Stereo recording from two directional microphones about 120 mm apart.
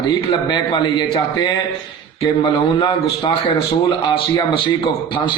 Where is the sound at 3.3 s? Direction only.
45° left (ahead or behind).